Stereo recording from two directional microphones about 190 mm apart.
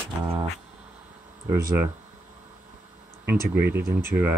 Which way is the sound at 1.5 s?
15° right (ahead or behind).